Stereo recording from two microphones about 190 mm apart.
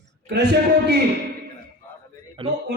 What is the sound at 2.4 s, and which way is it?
Speech, 30° right (ahead or behind).